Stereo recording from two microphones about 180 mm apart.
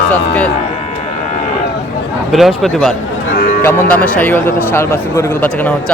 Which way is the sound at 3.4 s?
60° left (ahead or behind).